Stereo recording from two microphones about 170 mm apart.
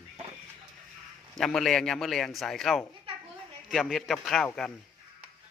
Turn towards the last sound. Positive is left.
turn(degrees=0)  # may be behind; listen again after turning